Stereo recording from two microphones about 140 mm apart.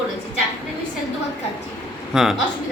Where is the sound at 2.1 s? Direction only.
5° right (ahead or behind).